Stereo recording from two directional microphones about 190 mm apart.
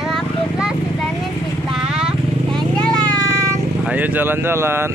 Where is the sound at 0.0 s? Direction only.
5° right (ahead or behind).